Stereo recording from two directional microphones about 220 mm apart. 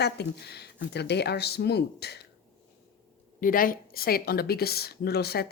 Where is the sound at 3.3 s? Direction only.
40° left (ahead or behind).